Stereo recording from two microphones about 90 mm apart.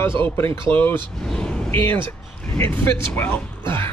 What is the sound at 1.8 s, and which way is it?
Speech, 70° right (ahead or behind).